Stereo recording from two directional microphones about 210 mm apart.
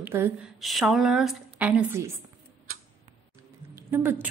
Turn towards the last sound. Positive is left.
turn(degrees=-10)  # may be behind; listen again after turning